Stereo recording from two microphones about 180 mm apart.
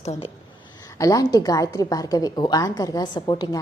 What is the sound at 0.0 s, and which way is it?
Speech, 40° left (ahead or behind).